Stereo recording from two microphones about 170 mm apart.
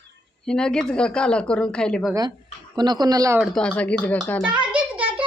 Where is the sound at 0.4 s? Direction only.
5° left (ahead or behind).